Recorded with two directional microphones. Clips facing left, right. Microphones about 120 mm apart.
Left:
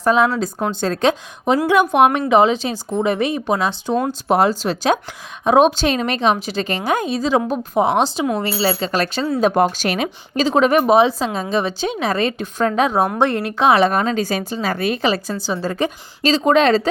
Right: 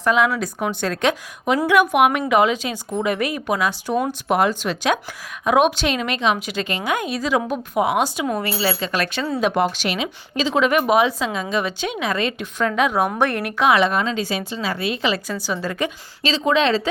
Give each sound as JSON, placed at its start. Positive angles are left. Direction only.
{"t": 0.0, "sound": "speech", "side_deg": 35}
{"t": 15.4, "sound": "speech", "side_deg": 30}